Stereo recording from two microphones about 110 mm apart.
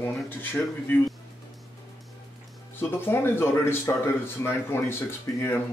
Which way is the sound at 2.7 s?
20° left (ahead or behind).